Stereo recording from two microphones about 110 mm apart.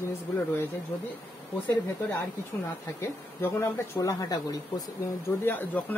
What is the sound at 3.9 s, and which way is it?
Speech, 35° left (ahead or behind).